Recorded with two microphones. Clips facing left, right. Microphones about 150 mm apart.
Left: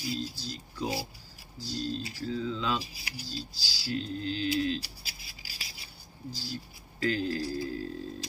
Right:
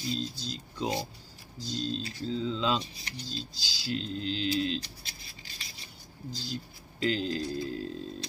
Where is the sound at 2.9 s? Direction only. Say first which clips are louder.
Right 1 dB; 5° left (ahead or behind).